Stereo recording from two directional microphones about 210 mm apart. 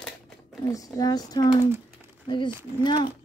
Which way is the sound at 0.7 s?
15° left (ahead or behind).